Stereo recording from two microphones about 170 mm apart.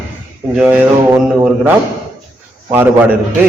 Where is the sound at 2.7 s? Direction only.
10° right (ahead or behind).